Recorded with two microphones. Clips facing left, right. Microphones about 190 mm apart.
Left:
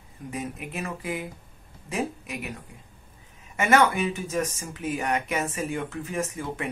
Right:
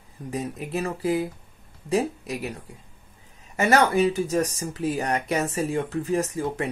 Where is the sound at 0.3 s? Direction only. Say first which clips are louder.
Right 5 dB; 35° right (ahead or behind).